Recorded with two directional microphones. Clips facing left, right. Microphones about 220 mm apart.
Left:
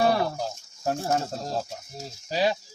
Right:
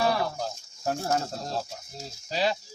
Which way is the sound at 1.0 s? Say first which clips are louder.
Left 2 dB; 15° left (ahead or behind).